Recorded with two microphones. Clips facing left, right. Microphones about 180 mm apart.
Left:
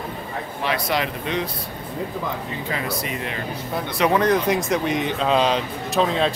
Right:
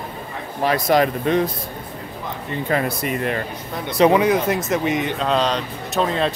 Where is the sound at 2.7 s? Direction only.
50° right (ahead or behind).